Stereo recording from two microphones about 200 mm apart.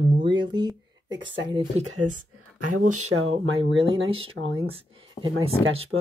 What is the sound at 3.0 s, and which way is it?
Speech, 90° right.